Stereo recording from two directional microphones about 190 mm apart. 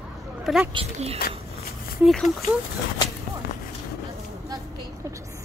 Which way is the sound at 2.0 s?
Centre (ahead or behind).